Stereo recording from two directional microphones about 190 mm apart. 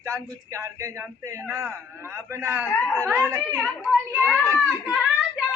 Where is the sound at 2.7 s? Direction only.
5° left (ahead or behind).